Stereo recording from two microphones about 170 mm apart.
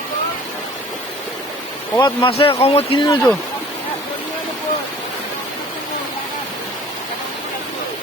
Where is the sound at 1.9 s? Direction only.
25° left (ahead or behind).